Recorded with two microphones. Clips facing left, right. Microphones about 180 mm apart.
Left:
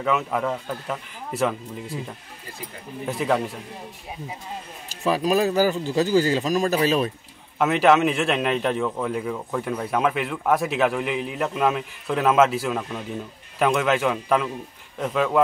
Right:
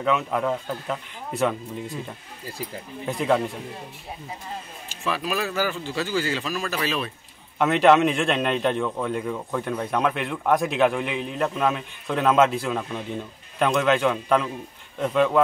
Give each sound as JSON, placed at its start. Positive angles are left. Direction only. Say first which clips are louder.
{"t": 0.0, "sound": "a man's voice", "louder": "even", "side_deg": 0}
{"t": 3.1, "sound": "a man's voice", "louder": "right 1 dB", "side_deg": 0}
{"t": 4.8, "sound": "speech", "louder": "left 6 dB", "side_deg": 40}
{"t": 7.5, "sound": "a man's voice", "louder": "right 1 dB", "side_deg": 0}